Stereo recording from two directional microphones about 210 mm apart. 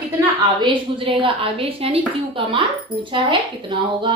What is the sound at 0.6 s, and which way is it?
A woman's voice, 25° right (ahead or behind).